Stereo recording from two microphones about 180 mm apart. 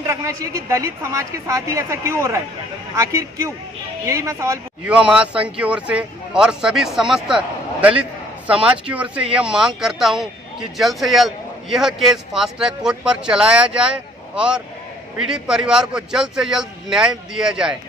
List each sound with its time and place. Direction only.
0.0 s speech: 15° right (ahead or behind)
4.9 s speech: 5° right (ahead or behind)